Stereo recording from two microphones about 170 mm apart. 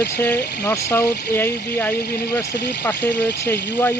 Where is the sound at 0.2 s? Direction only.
15° left (ahead or behind).